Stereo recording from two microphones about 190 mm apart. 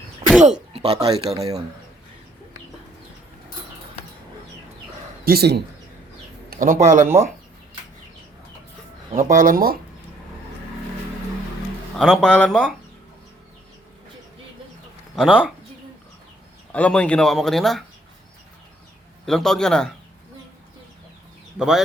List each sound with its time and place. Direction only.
0.7 s a sound: 30° right (ahead or behind)
1.0 s speech: 20° right (ahead or behind)
5.2 s speech: 55° right (ahead or behind)
6.5 s speech: 45° right (ahead or behind)
9.1 s speech: 45° right (ahead or behind)
11.9 s speech: centre (ahead or behind)
15.1 s speech: centre (ahead or behind)
16.7 s speech: 5° left (ahead or behind)
19.2 s speech: centre (ahead or behind)